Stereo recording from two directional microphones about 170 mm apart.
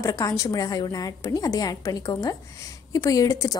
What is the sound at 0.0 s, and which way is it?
A woman's voice, 20° left (ahead or behind).